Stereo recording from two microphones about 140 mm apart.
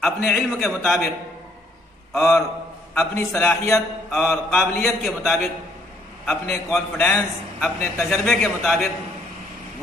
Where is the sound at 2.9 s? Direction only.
15° left (ahead or behind).